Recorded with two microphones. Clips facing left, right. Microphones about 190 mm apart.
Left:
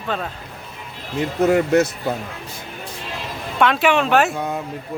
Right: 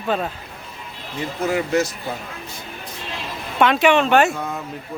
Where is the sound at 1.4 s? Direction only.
60° left (ahead or behind).